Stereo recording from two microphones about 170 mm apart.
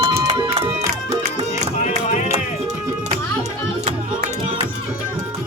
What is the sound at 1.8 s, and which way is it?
Music, 45° left (ahead or behind).